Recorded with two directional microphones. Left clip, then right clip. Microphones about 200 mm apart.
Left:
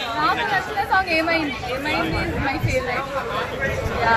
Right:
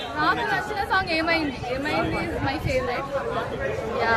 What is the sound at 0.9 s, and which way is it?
Speech, 30° right (ahead or behind).